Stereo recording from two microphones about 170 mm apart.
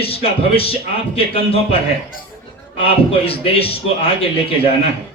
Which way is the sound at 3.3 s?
35° left (ahead or behind).